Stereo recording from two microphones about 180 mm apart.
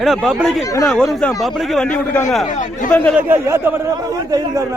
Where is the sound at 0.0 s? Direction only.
Centre (ahead or behind).